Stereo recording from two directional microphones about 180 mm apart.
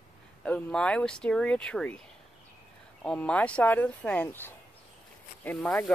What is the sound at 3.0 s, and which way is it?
Speech, 5° left (ahead or behind).